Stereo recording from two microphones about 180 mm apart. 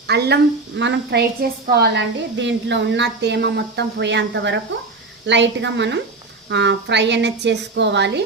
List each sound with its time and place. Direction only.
0.1 s a woman's voice: 65° right (ahead or behind)